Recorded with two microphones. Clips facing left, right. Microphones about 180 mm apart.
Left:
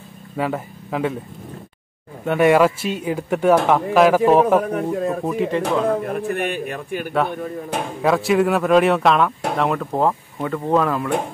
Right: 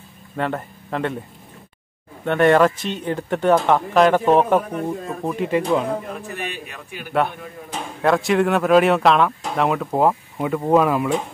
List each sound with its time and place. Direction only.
0.4 s speech: 5° left (ahead or behind)
2.2 s a man's voice: 5° left (ahead or behind)
5.6 s speech: 55° left (ahead or behind)
8.0 s speech: centre (ahead or behind)